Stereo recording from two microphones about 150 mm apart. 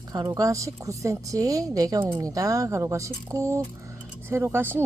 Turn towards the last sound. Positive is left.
turn(degrees=-15)  # may be behind; listen again after turning